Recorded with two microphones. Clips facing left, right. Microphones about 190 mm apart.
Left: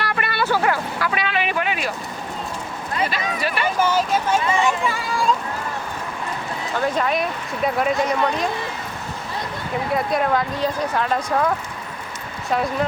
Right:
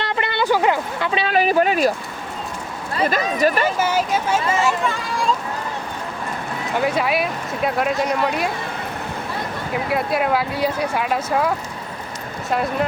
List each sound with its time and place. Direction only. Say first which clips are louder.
0.0 s a sound: right 2 dB; 20° right (ahead or behind)
1.3 s a sound: right 6 dB; 40° right (ahead or behind)
3.1 s speech: right 6 dB; 45° right (ahead or behind)
3.8 s speech: even; 10° right (ahead or behind)
6.8 s speech: right 1 dB; 10° right (ahead or behind)
9.9 s speech: even; 5° right (ahead or behind)